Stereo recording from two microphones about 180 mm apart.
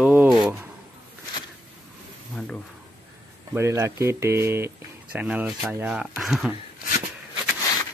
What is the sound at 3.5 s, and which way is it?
Speech, 15° right (ahead or behind).